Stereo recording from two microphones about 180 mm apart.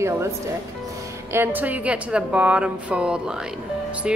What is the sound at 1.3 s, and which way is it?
A woman's voice, 10° right (ahead or behind).